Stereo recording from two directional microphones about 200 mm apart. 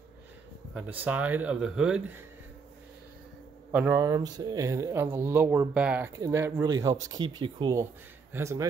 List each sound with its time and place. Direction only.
0.7 s speech: 10° right (ahead or behind)
3.7 s speech: 10° right (ahead or behind)